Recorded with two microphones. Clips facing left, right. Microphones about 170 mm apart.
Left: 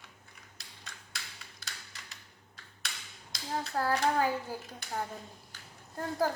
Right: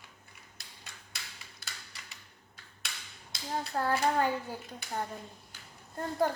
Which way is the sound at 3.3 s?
Centre (ahead or behind).